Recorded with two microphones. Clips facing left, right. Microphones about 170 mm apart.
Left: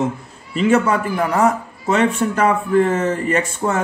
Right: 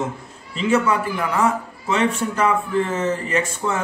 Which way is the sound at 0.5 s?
50° left (ahead or behind).